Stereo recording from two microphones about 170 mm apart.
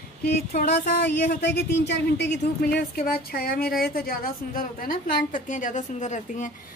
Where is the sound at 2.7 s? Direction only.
65° left (ahead or behind); by 6.5 s 45° left (ahead or behind).